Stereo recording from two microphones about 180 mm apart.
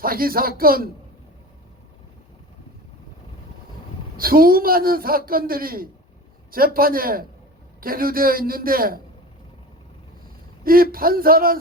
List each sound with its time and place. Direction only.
0.0 s a man's voice: 55° right (ahead or behind)
4.2 s a man's voice: 55° right (ahead or behind)
10.6 s a man's voice: 55° right (ahead or behind)